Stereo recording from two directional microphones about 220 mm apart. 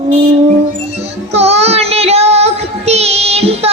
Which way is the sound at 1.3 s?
30° right (ahead or behind).